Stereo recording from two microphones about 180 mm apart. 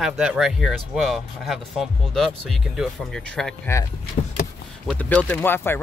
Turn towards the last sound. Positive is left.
turn(degrees=10)  # may be behind; listen again after turning